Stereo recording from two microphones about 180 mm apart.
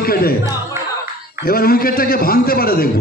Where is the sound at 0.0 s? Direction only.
55° left (ahead or behind).